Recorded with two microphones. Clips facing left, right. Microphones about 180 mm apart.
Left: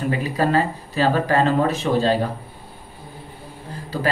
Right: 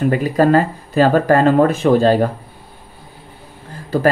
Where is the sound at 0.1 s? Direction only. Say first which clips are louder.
Right 6 dB; 50° right (ahead or behind).